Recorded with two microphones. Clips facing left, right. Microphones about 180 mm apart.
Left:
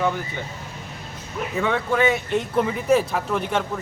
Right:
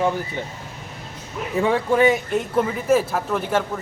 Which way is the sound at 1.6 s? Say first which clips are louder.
Right 4 dB; 30° right (ahead or behind).